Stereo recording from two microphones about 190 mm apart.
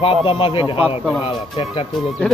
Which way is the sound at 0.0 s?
30° left (ahead or behind).